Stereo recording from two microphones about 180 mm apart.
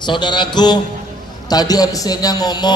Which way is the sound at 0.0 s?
25° left (ahead or behind).